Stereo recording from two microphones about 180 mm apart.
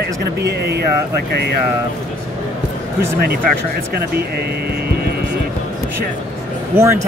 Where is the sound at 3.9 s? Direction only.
60° right (ahead or behind).